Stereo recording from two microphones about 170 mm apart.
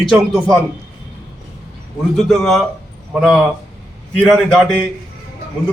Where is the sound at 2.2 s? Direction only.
Centre (ahead or behind).